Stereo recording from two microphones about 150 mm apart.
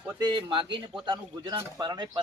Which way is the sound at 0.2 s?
30° right (ahead or behind).